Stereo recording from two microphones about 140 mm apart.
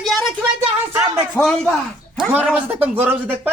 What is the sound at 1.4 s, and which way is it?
Speech, centre (ahead or behind).